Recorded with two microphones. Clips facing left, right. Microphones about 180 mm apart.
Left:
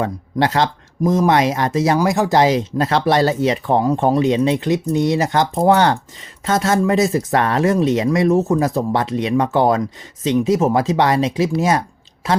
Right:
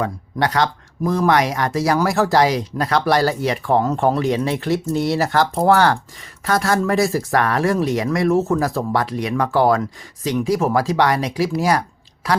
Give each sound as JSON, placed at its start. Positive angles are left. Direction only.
{"t": 0.0, "sound": "speech", "side_deg": 25}